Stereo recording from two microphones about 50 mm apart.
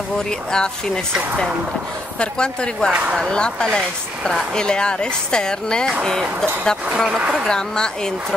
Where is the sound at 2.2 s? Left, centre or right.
Centre.